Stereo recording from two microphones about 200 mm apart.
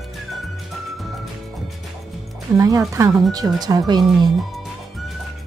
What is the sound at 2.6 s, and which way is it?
A woman's voice, 15° right (ahead or behind).